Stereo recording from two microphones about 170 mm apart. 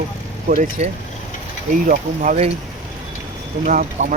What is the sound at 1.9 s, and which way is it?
Speech, 45° right (ahead or behind).